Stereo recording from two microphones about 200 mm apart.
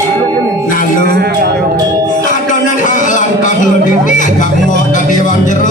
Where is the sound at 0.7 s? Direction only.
40° left (ahead or behind).